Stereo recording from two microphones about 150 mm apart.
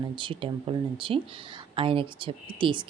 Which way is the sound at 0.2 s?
35° right (ahead or behind).